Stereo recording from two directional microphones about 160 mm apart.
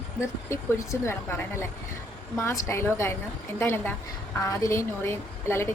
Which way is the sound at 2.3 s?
20° left (ahead or behind).